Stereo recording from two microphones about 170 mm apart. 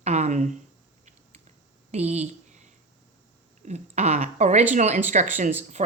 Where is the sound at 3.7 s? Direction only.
40° right (ahead or behind).